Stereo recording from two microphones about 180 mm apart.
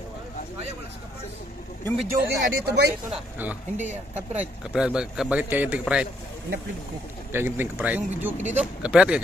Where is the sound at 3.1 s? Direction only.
10° right (ahead or behind).